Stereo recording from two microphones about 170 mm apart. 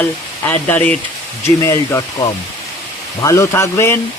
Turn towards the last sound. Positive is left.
turn(degrees=15)  # may be behind; listen again after turning